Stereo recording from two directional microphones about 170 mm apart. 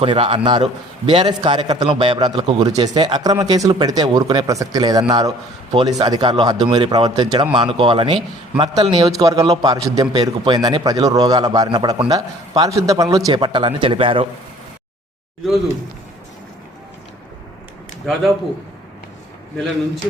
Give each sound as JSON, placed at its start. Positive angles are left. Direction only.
{"t": 0.0, "sound": "a man's voice", "side_deg": -30}